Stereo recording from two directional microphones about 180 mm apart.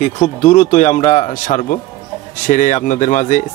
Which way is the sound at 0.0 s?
40° left (ahead or behind).